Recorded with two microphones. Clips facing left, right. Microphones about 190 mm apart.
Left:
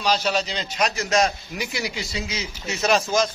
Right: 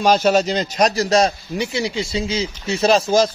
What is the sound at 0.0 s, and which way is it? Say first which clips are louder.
A man's voice: right 8 dB; 50° right (ahead or behind).